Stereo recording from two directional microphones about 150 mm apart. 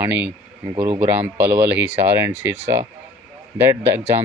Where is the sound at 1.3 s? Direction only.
10° right (ahead or behind).